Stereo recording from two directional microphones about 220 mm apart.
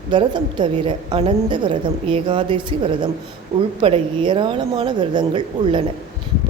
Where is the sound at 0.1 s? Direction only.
20° right (ahead or behind).